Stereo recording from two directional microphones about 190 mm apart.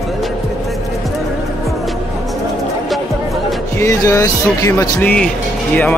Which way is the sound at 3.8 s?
15° left (ahead or behind).